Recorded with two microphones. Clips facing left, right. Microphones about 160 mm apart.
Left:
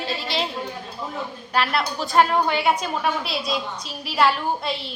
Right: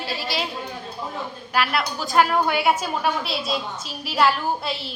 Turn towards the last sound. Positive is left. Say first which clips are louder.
# even
turn(degrees=0)  # may be behind; listen again after turning